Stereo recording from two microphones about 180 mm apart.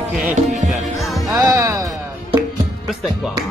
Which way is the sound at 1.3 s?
20° right (ahead or behind).